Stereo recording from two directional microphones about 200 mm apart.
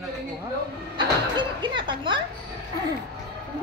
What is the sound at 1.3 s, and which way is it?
Speech, 25° right (ahead or behind).